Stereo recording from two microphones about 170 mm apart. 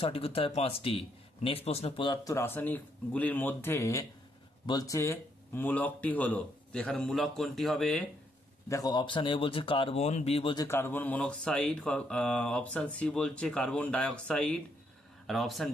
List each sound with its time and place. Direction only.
0.0 s speech: 35° left (ahead or behind); by 8.0 s 5° left (ahead or behind)
8.6 s speech: 20° left (ahead or behind)
10.7 s speech: 10° left (ahead or behind)